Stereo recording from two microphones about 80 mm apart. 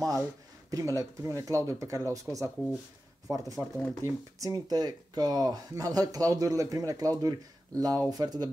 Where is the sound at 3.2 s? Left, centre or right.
Right.